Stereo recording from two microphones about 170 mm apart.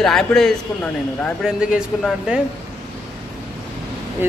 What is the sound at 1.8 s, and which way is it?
Speech, 5° right (ahead or behind).